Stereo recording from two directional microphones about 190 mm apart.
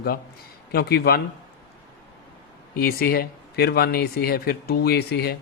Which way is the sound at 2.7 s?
50° left (ahead or behind).